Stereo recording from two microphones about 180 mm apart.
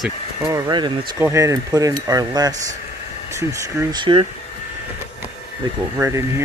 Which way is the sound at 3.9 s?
25° right (ahead or behind).